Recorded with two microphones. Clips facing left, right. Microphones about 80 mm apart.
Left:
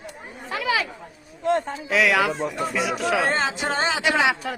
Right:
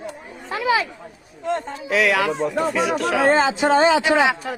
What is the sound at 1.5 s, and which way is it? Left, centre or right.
Speech, centre.